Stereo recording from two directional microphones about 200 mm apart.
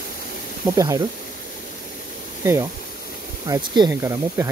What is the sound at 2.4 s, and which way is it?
Speech, 15° right (ahead or behind).